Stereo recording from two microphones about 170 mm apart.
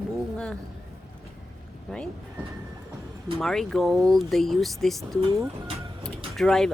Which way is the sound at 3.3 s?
Centre (ahead or behind).